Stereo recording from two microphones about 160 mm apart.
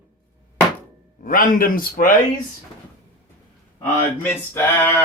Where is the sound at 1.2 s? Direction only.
60° left (ahead or behind).